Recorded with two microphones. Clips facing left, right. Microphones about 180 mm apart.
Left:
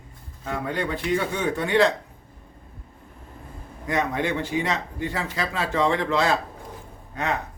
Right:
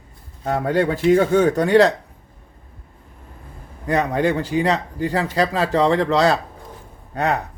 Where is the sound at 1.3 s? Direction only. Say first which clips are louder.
Right 9 dB; 45° right (ahead or behind).